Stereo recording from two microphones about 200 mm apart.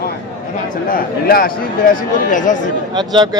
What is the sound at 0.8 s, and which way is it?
Speech, 45° left (ahead or behind).